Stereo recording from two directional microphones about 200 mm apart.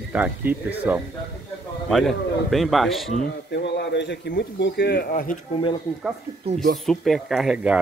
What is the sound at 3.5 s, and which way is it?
A man's voice, 60° left (ahead or behind).